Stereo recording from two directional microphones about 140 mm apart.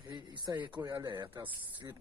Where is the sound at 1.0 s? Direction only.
30° right (ahead or behind).